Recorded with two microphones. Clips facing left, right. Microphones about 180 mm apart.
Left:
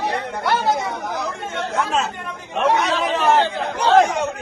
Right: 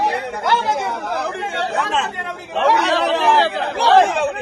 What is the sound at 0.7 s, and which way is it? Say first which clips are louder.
Speech: right 1 dB; 65° right (ahead or behind).